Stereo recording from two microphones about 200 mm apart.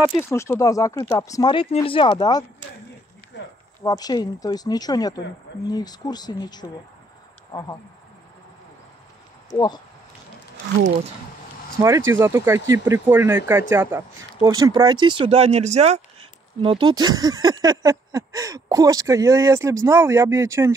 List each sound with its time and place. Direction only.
0.2 s speech: 15° left (ahead or behind)
3.3 s a sound: 60° left (ahead or behind)
3.8 s speech: 20° left (ahead or behind)
9.5 s speech: 20° left (ahead or behind)
12.1 s speech: 15° right (ahead or behind); by 16.0 s 35° right (ahead or behind)
16.6 s speech: 25° right (ahead or behind)